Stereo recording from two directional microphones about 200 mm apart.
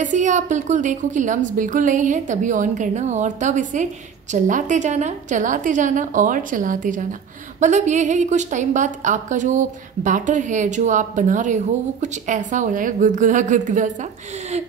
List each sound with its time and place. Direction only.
0.0 s a woman's voice: 40° right (ahead or behind)